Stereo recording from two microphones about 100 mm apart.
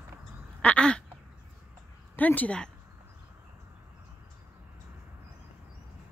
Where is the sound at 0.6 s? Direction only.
10° left (ahead or behind).